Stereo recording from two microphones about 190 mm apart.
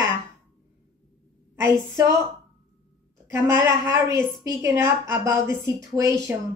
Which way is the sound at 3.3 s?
15° right (ahead or behind).